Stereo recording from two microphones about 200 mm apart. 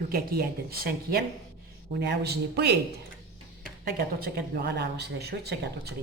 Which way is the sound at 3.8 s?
50° right (ahead or behind).